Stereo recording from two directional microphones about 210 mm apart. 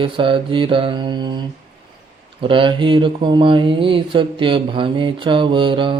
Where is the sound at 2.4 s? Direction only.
25° right (ahead or behind).